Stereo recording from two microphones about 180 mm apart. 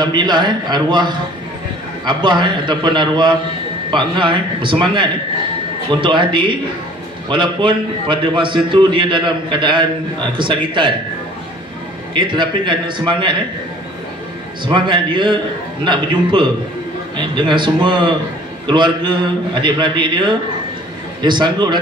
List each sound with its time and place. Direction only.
0.0 s a man's voice: 25° right (ahead or behind)
12.1 s a man's voice: 25° right (ahead or behind)
14.6 s a man's voice: 25° right (ahead or behind)